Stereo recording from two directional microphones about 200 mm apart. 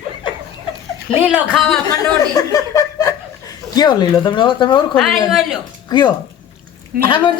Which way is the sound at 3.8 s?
20° left (ahead or behind).